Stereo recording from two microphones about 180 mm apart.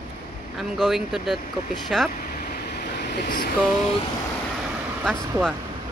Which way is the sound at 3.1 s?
50° left (ahead or behind).